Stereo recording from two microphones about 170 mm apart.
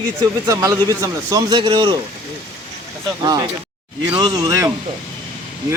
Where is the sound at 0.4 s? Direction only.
20° right (ahead or behind).